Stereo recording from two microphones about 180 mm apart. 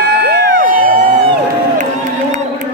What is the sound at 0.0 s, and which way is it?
Crowd, 70° right (ahead or behind).